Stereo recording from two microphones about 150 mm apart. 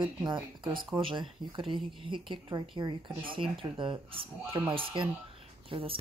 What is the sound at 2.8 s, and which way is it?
Speech, 30° right (ahead or behind).